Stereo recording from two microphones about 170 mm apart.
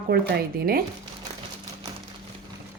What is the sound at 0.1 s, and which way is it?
Speech, 70° right (ahead or behind).